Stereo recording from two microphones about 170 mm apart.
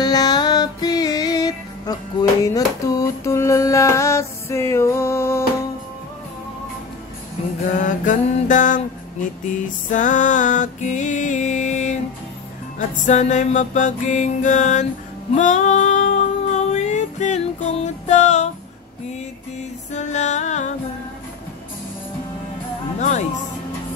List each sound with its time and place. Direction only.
0.0 s music: 25° left (ahead or behind)
7.7 s music: 50° left (ahead or behind)
9.8 s music: 50° left (ahead or behind)
15.3 s female singing: 45° left (ahead or behind)
19.9 s music: 45° left (ahead or behind)
22.9 s speech: 45° left (ahead or behind)